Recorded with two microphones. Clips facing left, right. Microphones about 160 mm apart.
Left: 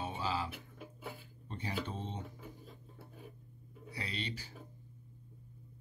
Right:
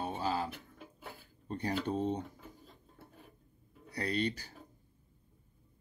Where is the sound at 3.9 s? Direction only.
45° right (ahead or behind).